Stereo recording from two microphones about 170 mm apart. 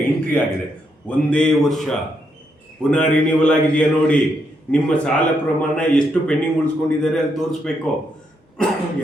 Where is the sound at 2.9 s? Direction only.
5° left (ahead or behind).